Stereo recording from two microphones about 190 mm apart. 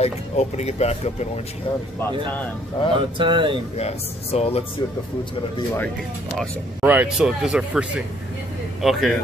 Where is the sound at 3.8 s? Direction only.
35° left (ahead or behind).